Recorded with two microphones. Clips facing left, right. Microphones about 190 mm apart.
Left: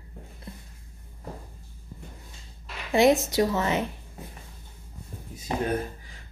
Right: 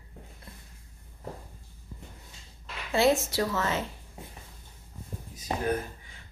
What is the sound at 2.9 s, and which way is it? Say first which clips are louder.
A woman's voice: left 4 dB; 15° left (ahead or behind).